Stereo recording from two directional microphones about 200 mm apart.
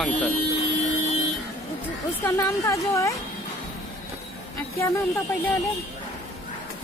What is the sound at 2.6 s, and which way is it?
Speech, 15° left (ahead or behind).